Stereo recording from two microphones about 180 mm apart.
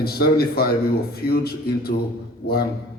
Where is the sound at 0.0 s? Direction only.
60° left (ahead or behind).